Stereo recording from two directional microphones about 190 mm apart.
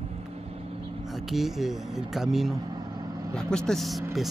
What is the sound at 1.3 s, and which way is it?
Speech, centre (ahead or behind).